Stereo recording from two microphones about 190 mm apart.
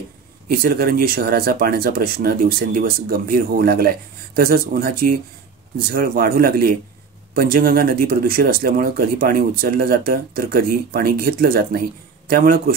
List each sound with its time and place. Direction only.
0.5 s speech: 50° right (ahead or behind)